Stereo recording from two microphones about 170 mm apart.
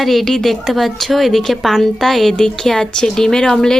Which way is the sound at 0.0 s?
Centre (ahead or behind).